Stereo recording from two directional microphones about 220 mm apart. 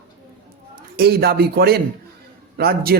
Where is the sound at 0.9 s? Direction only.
45° right (ahead or behind).